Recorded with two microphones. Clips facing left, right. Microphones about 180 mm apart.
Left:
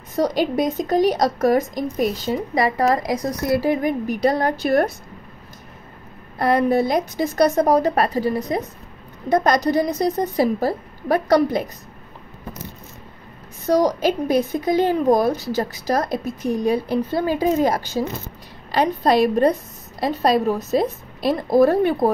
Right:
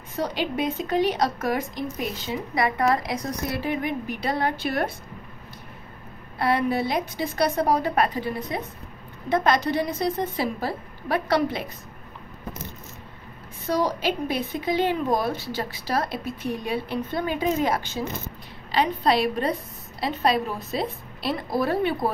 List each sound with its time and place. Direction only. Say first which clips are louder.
0.1 s speech: left 7 dB; 40° left (ahead or behind)
6.3 s a woman's voice: left 6 dB; 45° left (ahead or behind)
13.7 s a woman's voice: left 6 dB; 45° left (ahead or behind)